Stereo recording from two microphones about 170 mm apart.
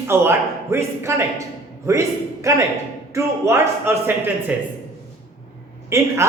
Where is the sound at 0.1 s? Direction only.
15° right (ahead or behind).